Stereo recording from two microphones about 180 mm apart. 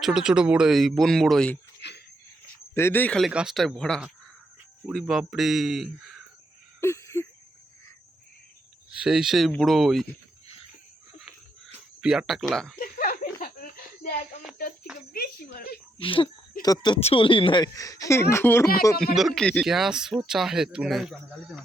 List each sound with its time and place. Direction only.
0.0 s speech: 5° right (ahead or behind)
1.8 s a sound: 70° left (ahead or behind)
2.7 s speech: 10° left (ahead or behind)
6.7 s a sound: 15° left (ahead or behind)
8.9 s speech: 5° right (ahead or behind)
11.9 s speech: 5° right (ahead or behind)
12.8 s a sound: 50° left (ahead or behind)
15.1 s speech: 55° left (ahead or behind)
16.0 s speech: 30° left (ahead or behind); by 18.7 s 15° left (ahead or behind)
19.1 s speech: centre (ahead or behind)